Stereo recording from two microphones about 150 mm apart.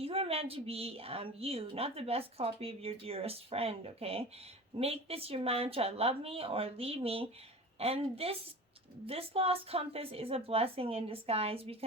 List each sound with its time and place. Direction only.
0.0 s a woman's voice: 40° right (ahead or behind)